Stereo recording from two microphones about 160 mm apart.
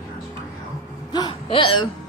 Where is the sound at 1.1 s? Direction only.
30° left (ahead or behind).